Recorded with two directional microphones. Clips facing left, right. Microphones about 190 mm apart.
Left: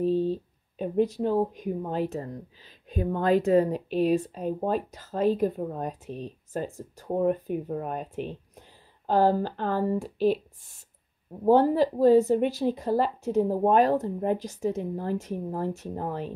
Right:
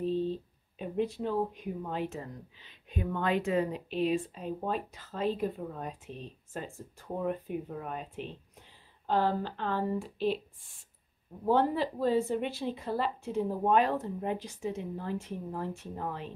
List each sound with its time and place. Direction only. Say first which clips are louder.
0.0 s speech: left 6 dB; 40° left (ahead or behind)
11.4 s speech: left 7 dB; 40° left (ahead or behind)